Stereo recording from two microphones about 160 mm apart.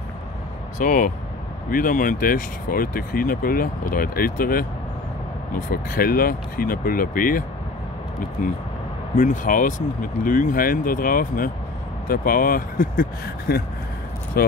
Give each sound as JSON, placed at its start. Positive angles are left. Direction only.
{"t": 0.7, "sound": "speech", "side_deg": 55}
{"t": 5.7, "sound": "speech", "side_deg": 65}